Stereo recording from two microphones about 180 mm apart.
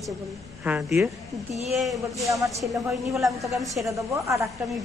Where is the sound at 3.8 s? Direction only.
15° right (ahead or behind).